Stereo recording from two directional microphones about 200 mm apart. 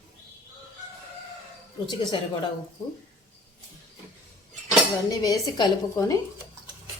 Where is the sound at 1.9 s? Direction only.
20° left (ahead or behind).